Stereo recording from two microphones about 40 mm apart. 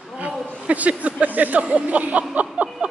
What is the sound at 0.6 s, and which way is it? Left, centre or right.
Speech, right.